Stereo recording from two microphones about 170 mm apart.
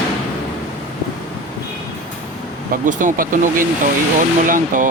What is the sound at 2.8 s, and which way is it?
Speech, 50° right (ahead or behind).